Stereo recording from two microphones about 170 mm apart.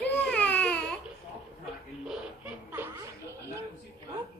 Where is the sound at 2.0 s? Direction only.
10° right (ahead or behind).